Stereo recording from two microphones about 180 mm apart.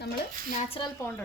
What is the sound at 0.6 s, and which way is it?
Speech, 30° left (ahead or behind).